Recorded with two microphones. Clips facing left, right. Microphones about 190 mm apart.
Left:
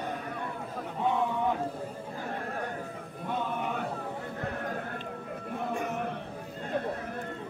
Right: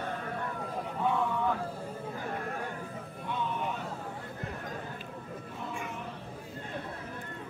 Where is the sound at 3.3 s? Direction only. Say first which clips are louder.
Left 2 dB; 50° left (ahead or behind).